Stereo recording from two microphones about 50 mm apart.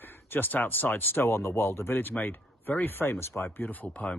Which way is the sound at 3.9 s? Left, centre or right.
Left.